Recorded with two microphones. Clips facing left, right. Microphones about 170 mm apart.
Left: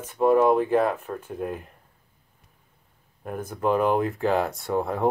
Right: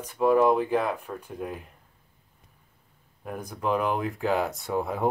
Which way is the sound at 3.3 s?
5° left (ahead or behind).